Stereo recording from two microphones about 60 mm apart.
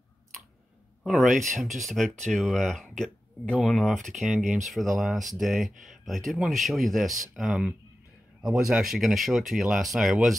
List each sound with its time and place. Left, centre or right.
1.0 s speech: centre
3.4 s speech: centre
3.7 s a man's voice: centre